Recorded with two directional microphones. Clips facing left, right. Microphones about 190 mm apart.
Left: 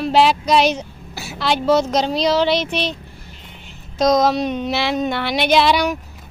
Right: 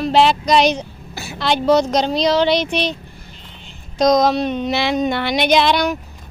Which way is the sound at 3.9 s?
5° left (ahead or behind).